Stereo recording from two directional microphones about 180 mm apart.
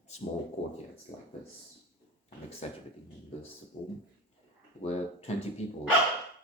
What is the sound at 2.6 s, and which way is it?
Speech, 35° left (ahead or behind).